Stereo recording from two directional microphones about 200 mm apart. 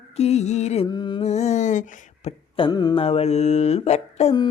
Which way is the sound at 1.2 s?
35° left (ahead or behind).